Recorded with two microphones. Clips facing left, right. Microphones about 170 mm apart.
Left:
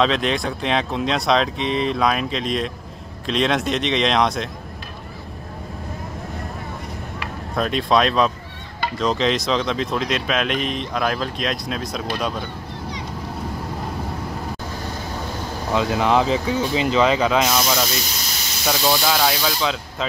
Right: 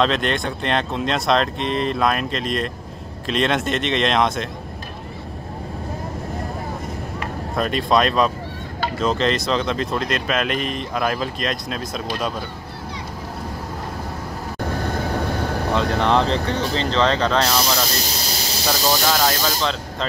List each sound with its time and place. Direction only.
0.0 s speech: centre (ahead or behind)
7.5 s speech: centre (ahead or behind)
15.7 s speech: 5° left (ahead or behind)
18.2 s snake: 35° right (ahead or behind)
18.7 s speech: centre (ahead or behind)